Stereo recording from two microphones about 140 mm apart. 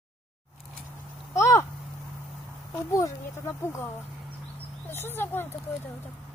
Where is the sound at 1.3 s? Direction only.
20° left (ahead or behind).